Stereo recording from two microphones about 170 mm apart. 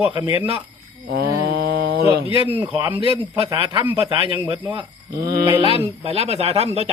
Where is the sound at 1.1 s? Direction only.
70° right (ahead or behind).